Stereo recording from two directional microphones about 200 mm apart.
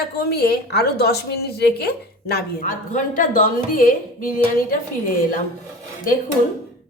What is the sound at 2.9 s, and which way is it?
A woman's voice, 40° left (ahead or behind).